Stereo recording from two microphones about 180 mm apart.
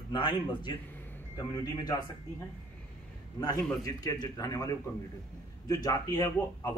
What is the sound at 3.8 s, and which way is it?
Speech, 20° left (ahead or behind).